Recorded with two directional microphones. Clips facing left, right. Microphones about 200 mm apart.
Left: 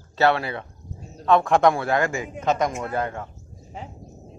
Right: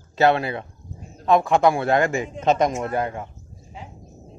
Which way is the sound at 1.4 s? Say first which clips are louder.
Even; centre (ahead or behind).